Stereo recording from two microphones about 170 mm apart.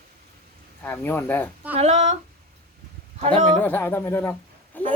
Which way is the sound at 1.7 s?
40° right (ahead or behind).